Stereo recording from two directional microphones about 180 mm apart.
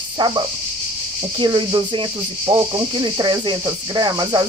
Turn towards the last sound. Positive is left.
turn(degrees=-25)  # may be behind; listen again after turning